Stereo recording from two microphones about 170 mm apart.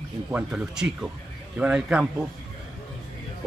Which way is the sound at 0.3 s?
5° right (ahead or behind).